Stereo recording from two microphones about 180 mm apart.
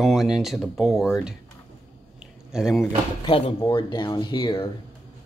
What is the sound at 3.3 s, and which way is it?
Speech, 30° left (ahead or behind).